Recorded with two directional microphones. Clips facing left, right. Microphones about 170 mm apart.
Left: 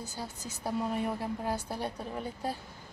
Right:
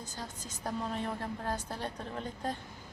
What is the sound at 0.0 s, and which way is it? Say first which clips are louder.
A woman's voice: left 3 dB; 10° left (ahead or behind).